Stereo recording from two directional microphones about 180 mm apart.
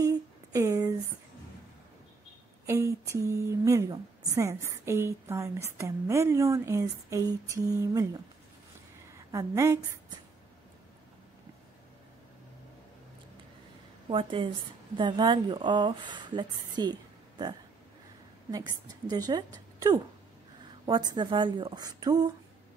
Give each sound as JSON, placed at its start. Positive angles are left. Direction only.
{"t": 0.0, "sound": "a sound", "side_deg": -20}
{"t": 2.6, "sound": "a woman's voice", "side_deg": -15}
{"t": 14.1, "sound": "a woman's voice", "side_deg": -30}